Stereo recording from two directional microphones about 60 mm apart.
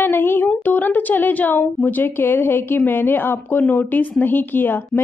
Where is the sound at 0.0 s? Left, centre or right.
Left.